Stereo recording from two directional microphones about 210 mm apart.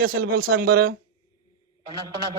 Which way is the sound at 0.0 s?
45° right (ahead or behind).